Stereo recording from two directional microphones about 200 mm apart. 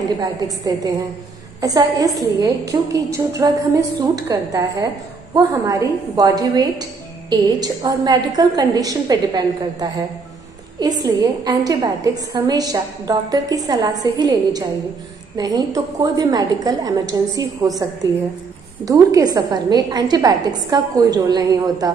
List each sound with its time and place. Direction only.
0.2 s a woman's voice: 20° right (ahead or behind)
18.9 s a woman's voice: 15° right (ahead or behind)